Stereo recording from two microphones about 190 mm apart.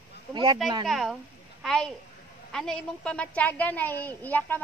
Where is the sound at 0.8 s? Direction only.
Centre (ahead or behind).